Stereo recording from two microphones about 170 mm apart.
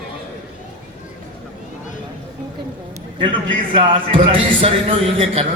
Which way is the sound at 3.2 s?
30° right (ahead or behind).